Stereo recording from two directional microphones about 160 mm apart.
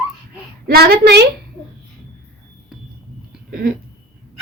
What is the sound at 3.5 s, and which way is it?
Speech, 65° right (ahead or behind).